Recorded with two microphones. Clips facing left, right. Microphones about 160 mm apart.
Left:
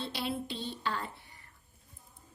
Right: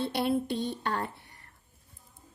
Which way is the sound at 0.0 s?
55° right (ahead or behind).